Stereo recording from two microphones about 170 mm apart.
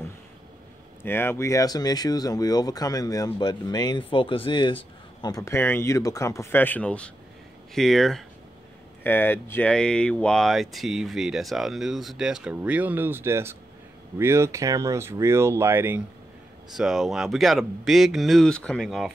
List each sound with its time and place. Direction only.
1.0 s speech: 15° left (ahead or behind); by 16.0 s 15° right (ahead or behind)
16.7 s speech: 5° right (ahead or behind)